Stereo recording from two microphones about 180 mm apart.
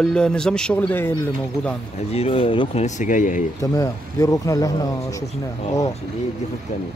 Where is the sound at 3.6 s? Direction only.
20° left (ahead or behind).